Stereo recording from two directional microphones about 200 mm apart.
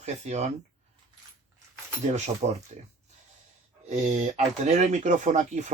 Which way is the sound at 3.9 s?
35° right (ahead or behind).